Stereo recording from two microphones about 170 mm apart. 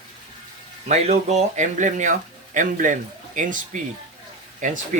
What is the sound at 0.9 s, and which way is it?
Speech, 40° right (ahead or behind).